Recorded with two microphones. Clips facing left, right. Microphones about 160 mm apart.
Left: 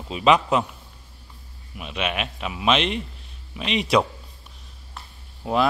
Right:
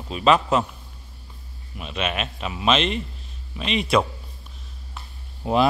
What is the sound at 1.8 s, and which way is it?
Speech, 10° left (ahead or behind).